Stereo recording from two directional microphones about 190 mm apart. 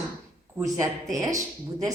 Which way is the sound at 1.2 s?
15° right (ahead or behind).